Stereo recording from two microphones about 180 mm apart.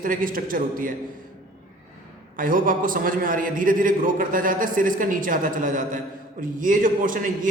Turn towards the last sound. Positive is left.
turn(degrees=-50)  # may be behind; listen again after turning